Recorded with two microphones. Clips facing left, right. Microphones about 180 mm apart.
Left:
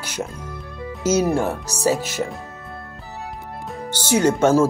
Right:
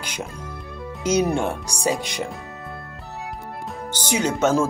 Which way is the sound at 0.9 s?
5° left (ahead or behind).